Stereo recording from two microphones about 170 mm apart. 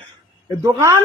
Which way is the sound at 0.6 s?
20° right (ahead or behind).